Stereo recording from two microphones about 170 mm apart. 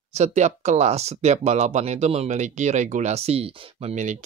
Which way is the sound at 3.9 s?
45° right (ahead or behind).